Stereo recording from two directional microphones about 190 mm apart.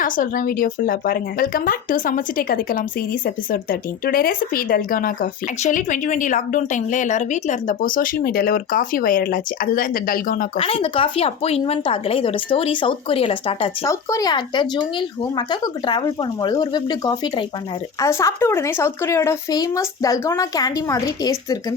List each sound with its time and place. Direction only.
0.0 s speech: 45° left (ahead or behind)
10.6 s speech: 30° left (ahead or behind)
13.8 s speech: 20° left (ahead or behind)